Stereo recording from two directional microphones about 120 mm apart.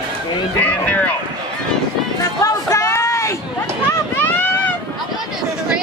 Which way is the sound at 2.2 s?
25° left (ahead or behind).